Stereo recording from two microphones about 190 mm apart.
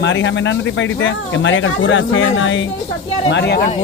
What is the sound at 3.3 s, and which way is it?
Speech, 60° left (ahead or behind).